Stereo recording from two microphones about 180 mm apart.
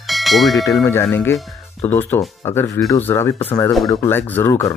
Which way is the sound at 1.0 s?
10° left (ahead or behind).